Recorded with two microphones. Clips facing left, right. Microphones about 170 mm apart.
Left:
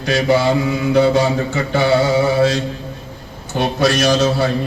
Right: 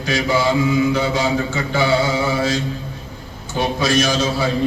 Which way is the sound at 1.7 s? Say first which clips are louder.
Left 4 dB; 60° left (ahead or behind).